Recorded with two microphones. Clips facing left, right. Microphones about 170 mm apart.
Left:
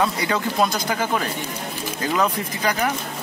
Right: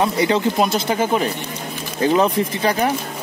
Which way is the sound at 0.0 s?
20° right (ahead or behind).